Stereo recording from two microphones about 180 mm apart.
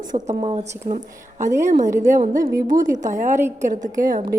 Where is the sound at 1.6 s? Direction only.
45° right (ahead or behind).